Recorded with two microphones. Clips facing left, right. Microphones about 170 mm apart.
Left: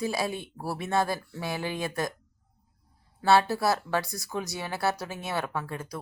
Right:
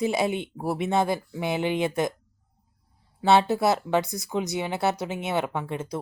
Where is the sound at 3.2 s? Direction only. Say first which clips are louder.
Right 3 dB; 20° right (ahead or behind).